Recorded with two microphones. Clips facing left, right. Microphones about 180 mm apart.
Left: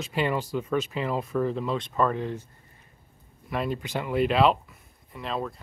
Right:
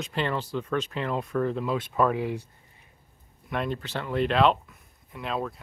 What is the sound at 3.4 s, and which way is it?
Speech, 5° left (ahead or behind).